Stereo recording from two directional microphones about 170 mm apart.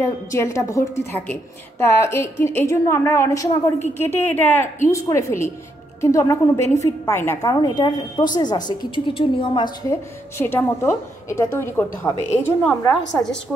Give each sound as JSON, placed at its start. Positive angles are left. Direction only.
{"t": 0.0, "sound": "a woman's voice", "side_deg": 15}
{"t": 9.8, "sound": "a woman's voice", "side_deg": 15}